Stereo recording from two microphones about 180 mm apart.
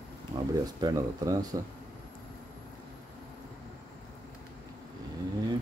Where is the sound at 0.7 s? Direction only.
20° right (ahead or behind).